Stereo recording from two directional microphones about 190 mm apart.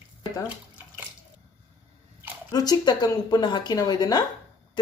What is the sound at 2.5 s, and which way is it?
Speech, 20° left (ahead or behind).